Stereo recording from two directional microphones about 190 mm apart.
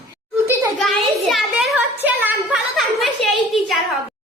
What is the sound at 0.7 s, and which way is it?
Speech, centre (ahead or behind).